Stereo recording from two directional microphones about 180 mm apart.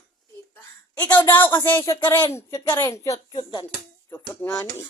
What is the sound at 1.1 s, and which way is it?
Speech, 10° left (ahead or behind).